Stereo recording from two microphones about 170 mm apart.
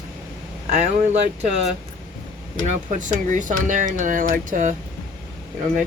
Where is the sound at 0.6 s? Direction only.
45° right (ahead or behind).